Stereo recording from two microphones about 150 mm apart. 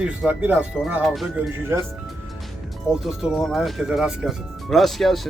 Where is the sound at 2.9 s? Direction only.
5° right (ahead or behind).